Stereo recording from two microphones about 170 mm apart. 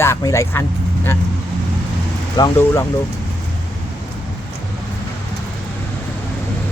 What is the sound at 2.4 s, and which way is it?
Speech, 15° left (ahead or behind).